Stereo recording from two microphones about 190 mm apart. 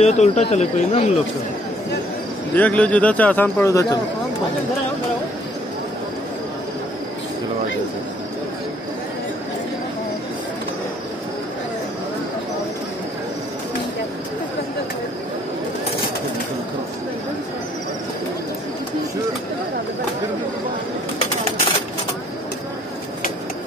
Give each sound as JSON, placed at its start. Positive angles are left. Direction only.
{"t": 0.0, "sound": "speech", "side_deg": 35}
{"t": 2.5, "sound": "a man's voice", "side_deg": 5}